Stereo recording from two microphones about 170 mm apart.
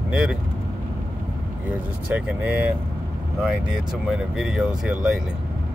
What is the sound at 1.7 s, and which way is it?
Speech, 10° right (ahead or behind).